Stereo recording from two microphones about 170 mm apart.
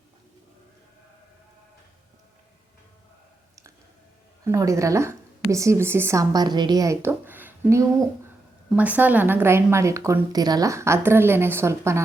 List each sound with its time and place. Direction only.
4.4 s speech: 20° right (ahead or behind)